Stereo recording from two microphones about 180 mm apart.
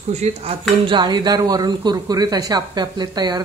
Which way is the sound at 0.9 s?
25° right (ahead or behind).